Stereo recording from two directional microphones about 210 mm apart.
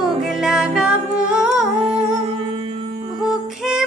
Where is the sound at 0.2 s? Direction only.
Centre (ahead or behind).